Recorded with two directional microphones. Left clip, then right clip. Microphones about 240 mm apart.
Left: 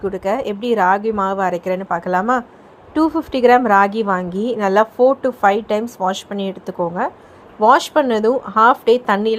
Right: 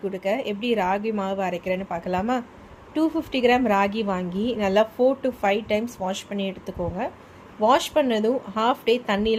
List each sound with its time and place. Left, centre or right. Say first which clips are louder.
0.0 s speech: left 6 dB; centre